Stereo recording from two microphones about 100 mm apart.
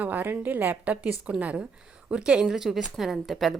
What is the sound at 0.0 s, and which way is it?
A woman's voice, 20° right (ahead or behind).